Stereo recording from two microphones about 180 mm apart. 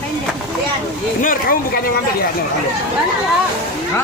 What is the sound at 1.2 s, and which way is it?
Speech, 50° left (ahead or behind).